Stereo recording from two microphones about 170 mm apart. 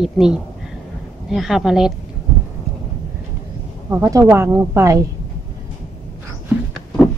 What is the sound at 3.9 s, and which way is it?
Speech, 20° right (ahead or behind).